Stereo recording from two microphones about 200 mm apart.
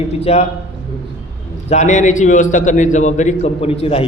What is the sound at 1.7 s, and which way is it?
A man's voice, 35° left (ahead or behind).